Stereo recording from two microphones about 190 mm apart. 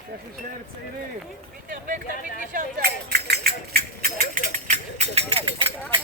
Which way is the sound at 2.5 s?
45° right (ahead or behind).